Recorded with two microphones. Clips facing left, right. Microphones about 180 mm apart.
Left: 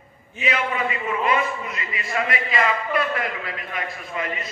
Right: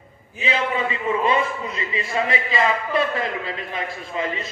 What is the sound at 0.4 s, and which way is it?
A man's voice, 30° right (ahead or behind).